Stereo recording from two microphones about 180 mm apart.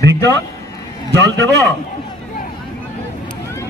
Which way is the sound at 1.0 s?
70° right (ahead or behind).